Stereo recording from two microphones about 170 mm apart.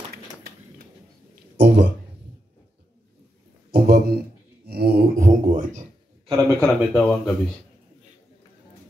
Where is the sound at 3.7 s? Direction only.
65° right (ahead or behind); by 5.9 s 45° right (ahead or behind).